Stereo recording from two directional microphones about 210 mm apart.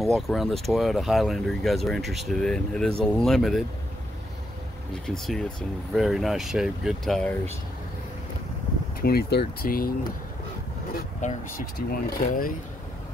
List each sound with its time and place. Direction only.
0.0 s speech: centre (ahead or behind)
5.0 s speech: centre (ahead or behind)
9.0 s speech: 50° left (ahead or behind)
11.1 s speech: 35° left (ahead or behind)